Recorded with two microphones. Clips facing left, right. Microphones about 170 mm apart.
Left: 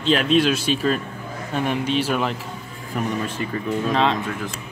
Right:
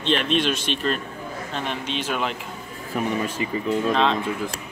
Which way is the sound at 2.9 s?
5° right (ahead or behind).